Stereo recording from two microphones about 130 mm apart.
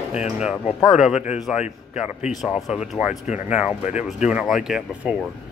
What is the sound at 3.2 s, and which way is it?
Speech, 65° left (ahead or behind).